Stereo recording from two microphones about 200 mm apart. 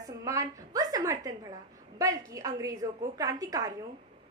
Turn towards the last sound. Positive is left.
turn(degrees=-15)  # may be behind; listen again after turning